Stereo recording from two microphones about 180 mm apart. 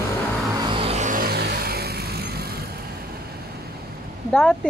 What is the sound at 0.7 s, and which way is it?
Vehicle, 35° right (ahead or behind).